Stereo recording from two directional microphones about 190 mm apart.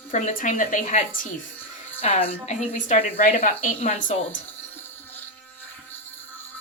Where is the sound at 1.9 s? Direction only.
35° left (ahead or behind).